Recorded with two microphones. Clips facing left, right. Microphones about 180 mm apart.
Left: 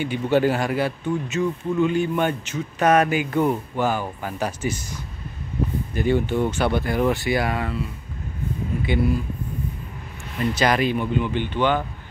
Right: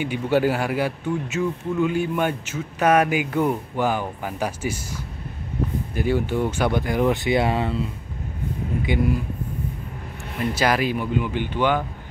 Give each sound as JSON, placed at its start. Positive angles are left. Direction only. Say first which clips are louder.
{"t": 0.0, "sound": "a man's voice", "louder": "left 1 dB", "side_deg": -10}
{"t": 5.5, "sound": "a sound", "louder": "left 1 dB", "side_deg": -65}
{"t": 5.9, "sound": "a man's voice", "louder": "left 1 dB", "side_deg": -10}
{"t": 8.8, "sound": "a man's voice", "louder": "left 1 dB", "side_deg": -15}
{"t": 10.4, "sound": "a man's voice", "louder": "left 1 dB", "side_deg": -10}